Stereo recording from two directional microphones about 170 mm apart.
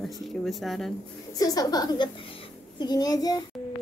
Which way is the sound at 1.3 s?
20° left (ahead or behind).